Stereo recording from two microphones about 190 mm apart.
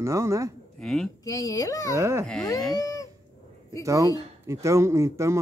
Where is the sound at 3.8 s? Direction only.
15° right (ahead or behind).